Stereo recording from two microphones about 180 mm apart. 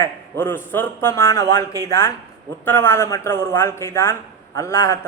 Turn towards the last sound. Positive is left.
turn(degrees=15)  # may be behind; listen again after turning